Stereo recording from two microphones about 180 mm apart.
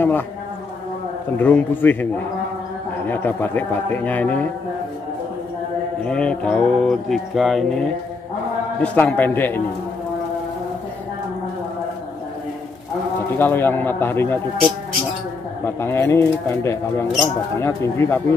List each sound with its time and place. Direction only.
1.4 s a man's voice: 10° left (ahead or behind)
3.1 s a man's voice: 10° left (ahead or behind)
6.0 s mantra: 5° left (ahead or behind)
8.8 s a man's voice: 10° left (ahead or behind)
13.4 s a man's voice: 10° left (ahead or behind)